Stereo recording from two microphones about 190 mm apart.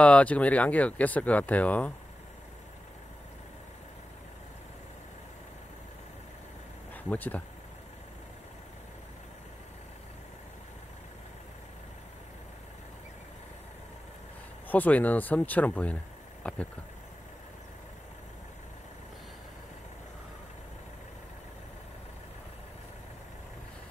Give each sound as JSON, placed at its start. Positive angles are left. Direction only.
{"t": 0.0, "sound": "speech", "side_deg": 5}
{"t": 6.9, "sound": "speech", "side_deg": 10}
{"t": 14.7, "sound": "speech", "side_deg": 10}